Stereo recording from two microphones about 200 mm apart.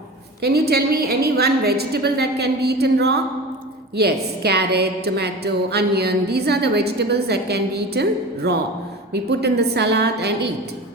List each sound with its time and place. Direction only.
0.4 s a woman's voice: 55° right (ahead or behind)